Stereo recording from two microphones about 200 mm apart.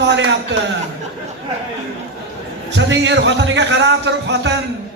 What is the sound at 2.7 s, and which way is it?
A man's voice, 65° right (ahead or behind).